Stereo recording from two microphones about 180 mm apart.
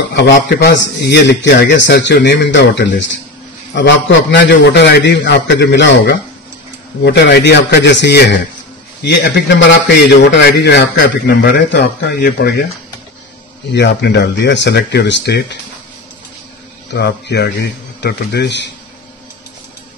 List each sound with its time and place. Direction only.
0.6 s a man's voice: 65° left (ahead or behind)
13.7 s a man's voice: 70° left (ahead or behind)
16.9 s a man's voice: 65° left (ahead or behind)